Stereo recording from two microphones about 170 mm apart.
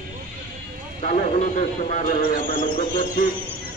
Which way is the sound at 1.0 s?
45° left (ahead or behind).